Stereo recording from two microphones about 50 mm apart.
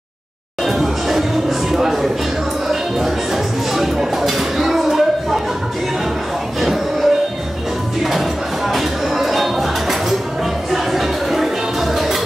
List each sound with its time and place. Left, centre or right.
0.7 s music: centre
1.7 s speech: centre
3.7 s a sound: centre
6.6 s music: centre